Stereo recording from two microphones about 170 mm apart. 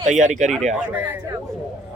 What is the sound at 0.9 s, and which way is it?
Speech, 15° right (ahead or behind).